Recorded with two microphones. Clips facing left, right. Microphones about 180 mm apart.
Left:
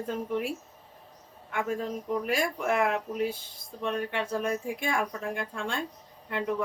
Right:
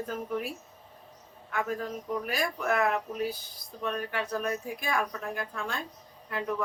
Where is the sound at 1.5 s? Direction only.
25° left (ahead or behind).